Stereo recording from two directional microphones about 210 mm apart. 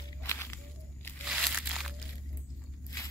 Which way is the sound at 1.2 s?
Centre (ahead or behind).